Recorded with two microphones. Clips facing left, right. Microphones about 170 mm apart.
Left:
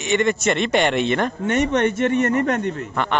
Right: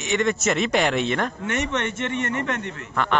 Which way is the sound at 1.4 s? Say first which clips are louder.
Left 7 dB; 35° left (ahead or behind).